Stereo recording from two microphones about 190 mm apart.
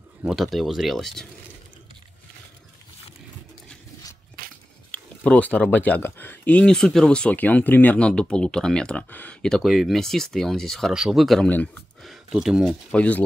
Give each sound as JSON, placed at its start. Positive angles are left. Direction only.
{"t": 0.3, "sound": "speech", "side_deg": 0}
{"t": 4.4, "sound": "biting", "side_deg": -50}
{"t": 4.9, "sound": "speech", "side_deg": 5}